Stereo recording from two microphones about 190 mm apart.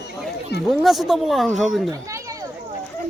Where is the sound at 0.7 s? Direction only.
Centre (ahead or behind).